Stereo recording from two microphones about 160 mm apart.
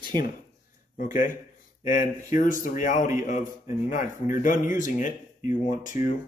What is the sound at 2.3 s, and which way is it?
Speech, 55° left (ahead or behind).